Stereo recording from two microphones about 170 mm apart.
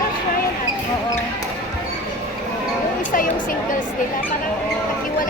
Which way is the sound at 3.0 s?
55° left (ahead or behind).